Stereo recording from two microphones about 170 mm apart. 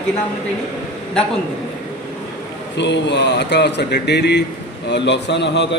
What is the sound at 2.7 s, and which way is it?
A man's voice, 90° left.